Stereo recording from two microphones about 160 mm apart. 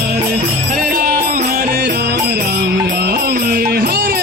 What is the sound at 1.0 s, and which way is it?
Music, 60° right (ahead or behind).